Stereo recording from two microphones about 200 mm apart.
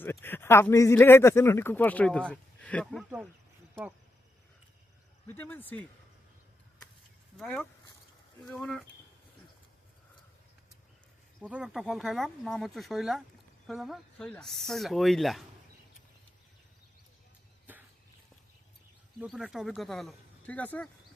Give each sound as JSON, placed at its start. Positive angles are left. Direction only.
{"t": 0.0, "sound": "speech", "side_deg": 10}
{"t": 5.3, "sound": "speech", "side_deg": 10}
{"t": 7.3, "sound": "speech", "side_deg": 5}
{"t": 11.3, "sound": "speech", "side_deg": -5}
{"t": 17.7, "sound": "a sound", "side_deg": -10}
{"t": 19.2, "sound": "speech", "side_deg": 0}